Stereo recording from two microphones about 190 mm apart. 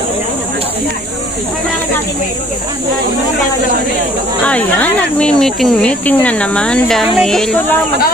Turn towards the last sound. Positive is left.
turn(degrees=5)  # may be behind; listen again after turning